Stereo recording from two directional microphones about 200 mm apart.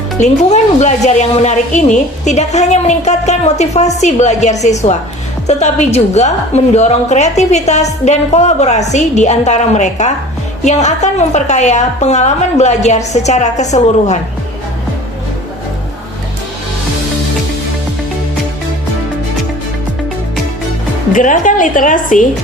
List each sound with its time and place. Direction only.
0.2 s a woman's voice: 35° left (ahead or behind)
21.1 s a woman's voice: 40° left (ahead or behind)